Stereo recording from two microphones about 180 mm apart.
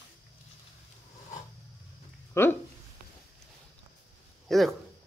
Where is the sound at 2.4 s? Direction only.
15° left (ahead or behind).